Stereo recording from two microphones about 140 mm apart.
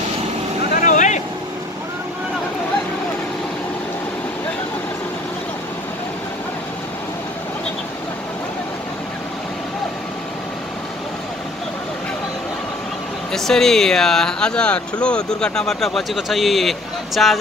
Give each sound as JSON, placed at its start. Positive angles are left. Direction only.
{"t": 0.8, "sound": "vehicle", "side_deg": 60}
{"t": 13.3, "sound": "speech", "side_deg": 5}